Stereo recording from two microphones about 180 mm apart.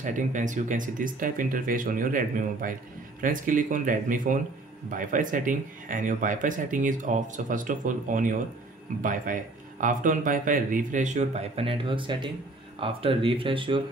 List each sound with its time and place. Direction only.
0.0 s speech: 45° right (ahead or behind); by 13.8 s 30° right (ahead or behind)